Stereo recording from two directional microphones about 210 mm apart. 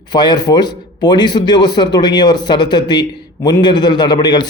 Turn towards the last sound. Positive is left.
turn(degrees=20)  # may be behind; listen again after turning